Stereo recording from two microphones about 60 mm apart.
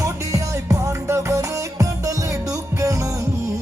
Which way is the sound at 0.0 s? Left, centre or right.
Right.